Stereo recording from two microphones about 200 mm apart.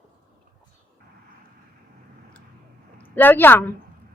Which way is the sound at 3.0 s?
10° left (ahead or behind).